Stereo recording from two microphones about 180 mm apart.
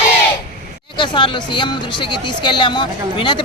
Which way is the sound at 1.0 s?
25° left (ahead or behind).